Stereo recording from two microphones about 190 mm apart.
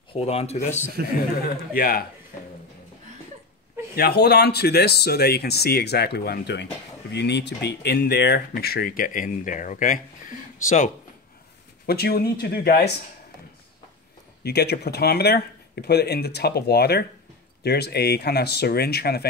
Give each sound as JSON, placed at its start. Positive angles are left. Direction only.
{"t": 0.1, "sound": "speech", "side_deg": 30}
{"t": 1.7, "sound": "speech", "side_deg": 50}
{"t": 3.9, "sound": "speech", "side_deg": 55}
{"t": 11.8, "sound": "speech", "side_deg": 55}
{"t": 14.4, "sound": "speech", "side_deg": 60}